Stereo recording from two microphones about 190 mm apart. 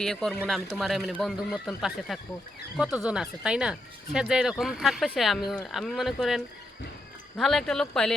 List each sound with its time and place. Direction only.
0.0 s speech: centre (ahead or behind)